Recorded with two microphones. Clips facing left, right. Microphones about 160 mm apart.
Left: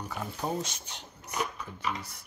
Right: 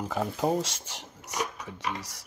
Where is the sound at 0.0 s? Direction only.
90° right.